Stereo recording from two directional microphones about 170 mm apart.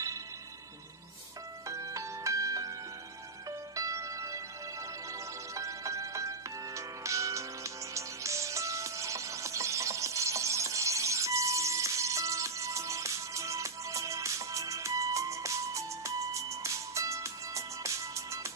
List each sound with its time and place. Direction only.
1.7 s music: 20° right (ahead or behind)
3.7 s music: 20° right (ahead or behind)
5.5 s music: 20° right (ahead or behind)